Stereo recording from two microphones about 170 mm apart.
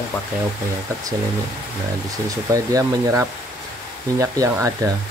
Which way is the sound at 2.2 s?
20° right (ahead or behind).